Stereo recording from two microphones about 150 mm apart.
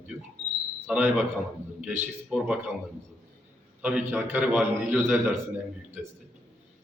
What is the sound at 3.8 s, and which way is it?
A man's voice, 10° right (ahead or behind).